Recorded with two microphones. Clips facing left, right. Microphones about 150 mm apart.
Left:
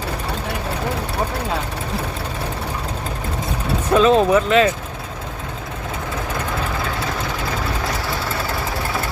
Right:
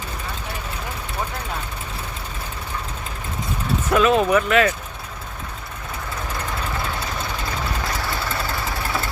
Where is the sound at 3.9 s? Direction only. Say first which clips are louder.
Left 3 dB; 30° left (ahead or behind).